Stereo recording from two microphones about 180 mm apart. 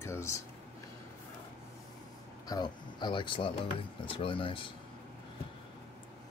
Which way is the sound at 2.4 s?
25° left (ahead or behind).